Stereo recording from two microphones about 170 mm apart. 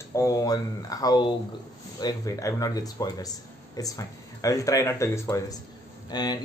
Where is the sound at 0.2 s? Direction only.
20° left (ahead or behind).